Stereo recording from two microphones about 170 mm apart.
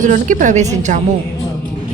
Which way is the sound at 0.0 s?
45° right (ahead or behind).